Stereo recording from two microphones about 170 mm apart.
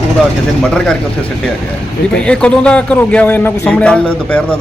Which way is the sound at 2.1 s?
5° left (ahead or behind).